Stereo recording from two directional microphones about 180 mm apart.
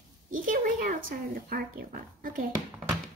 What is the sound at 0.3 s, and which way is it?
Speech, 50° right (ahead or behind).